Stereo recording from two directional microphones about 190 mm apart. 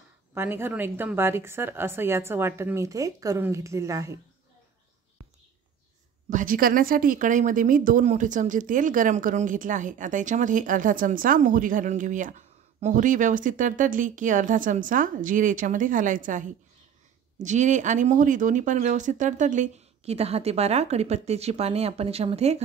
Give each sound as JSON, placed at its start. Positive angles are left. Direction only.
{"t": 0.3, "sound": "a woman's voice", "side_deg": -10}
{"t": 6.3, "sound": "a woman's voice", "side_deg": -45}